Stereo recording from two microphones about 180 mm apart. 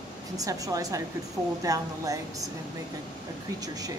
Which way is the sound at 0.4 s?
20° right (ahead or behind).